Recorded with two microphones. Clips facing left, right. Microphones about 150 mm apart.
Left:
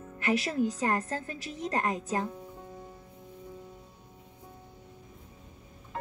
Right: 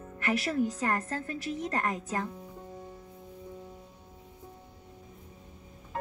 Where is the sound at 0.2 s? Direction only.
20° left (ahead or behind).